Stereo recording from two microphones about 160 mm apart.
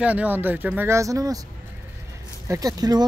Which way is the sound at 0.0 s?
10° right (ahead or behind).